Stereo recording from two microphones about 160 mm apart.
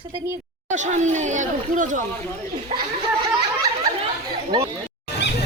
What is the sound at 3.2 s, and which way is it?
Snicker, 25° right (ahead or behind).